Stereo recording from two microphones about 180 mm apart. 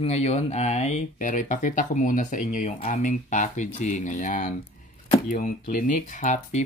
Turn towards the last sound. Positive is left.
turn(degrees=45)  # may be behind; listen again after turning